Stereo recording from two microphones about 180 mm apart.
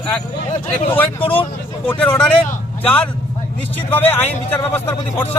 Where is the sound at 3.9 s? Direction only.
10° left (ahead or behind).